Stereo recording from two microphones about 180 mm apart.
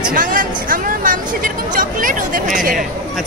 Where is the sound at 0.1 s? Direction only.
50° right (ahead or behind).